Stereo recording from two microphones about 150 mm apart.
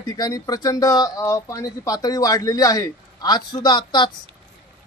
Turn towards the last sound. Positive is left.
turn(degrees=30)  # may be behind; listen again after turning